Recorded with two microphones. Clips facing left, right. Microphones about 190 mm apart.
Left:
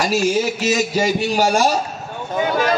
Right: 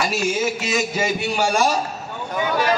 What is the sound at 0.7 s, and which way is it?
Speech, 35° left (ahead or behind).